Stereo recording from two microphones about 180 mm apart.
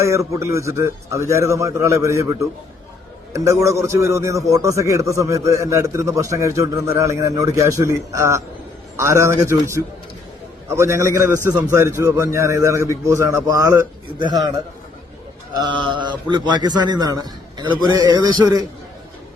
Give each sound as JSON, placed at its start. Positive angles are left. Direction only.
{"t": 0.0, "sound": "a man's voice", "side_deg": -15}
{"t": 15.5, "sound": "a man's voice", "side_deg": -25}